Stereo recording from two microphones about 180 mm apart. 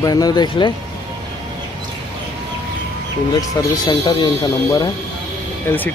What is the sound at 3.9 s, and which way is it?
Speech, 20° left (ahead or behind).